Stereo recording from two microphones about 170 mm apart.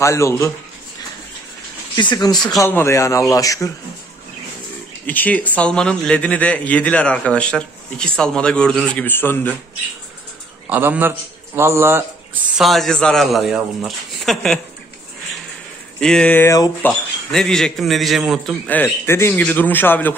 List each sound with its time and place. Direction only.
0.0 s speech: 15° left (ahead or behind)
2.0 s speech: 25° left (ahead or behind)
5.0 s speech: 10° left (ahead or behind)
10.7 s a man's voice: 10° right (ahead or behind)
12.5 s a man's voice: centre (ahead or behind)
16.0 s speech: 5° left (ahead or behind)
16.8 s a man's voice: 5° left (ahead or behind)